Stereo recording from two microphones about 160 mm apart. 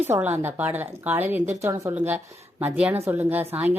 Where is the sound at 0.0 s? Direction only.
10° right (ahead or behind).